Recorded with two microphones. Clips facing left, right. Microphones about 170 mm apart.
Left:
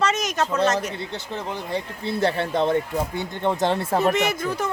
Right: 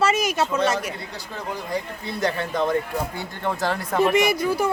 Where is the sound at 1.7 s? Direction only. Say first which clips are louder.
Left 5 dB; 30° left (ahead or behind).